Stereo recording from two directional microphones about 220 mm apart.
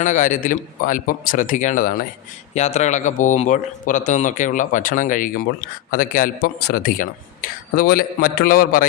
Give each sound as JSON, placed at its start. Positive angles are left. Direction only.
{"t": 0.0, "sound": "speech", "side_deg": 35}